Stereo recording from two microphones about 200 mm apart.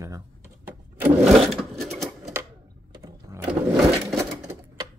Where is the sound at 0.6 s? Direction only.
10° right (ahead or behind).